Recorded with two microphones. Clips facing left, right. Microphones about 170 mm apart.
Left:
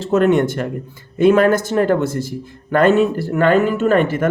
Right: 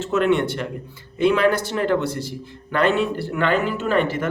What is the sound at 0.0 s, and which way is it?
Speech, 40° left (ahead or behind).